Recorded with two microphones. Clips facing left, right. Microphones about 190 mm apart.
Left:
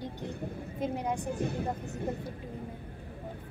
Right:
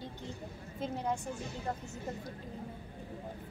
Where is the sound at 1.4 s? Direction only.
60° left (ahead or behind).